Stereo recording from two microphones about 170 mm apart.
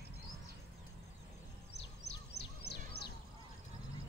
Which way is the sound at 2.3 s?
70° left (ahead or behind).